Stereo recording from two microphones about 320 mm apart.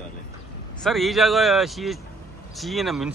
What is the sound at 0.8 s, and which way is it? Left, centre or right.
Speech, centre.